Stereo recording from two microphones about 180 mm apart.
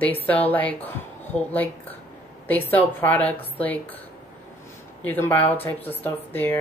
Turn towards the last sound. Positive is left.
turn(degrees=10)  # may be behind; listen again after turning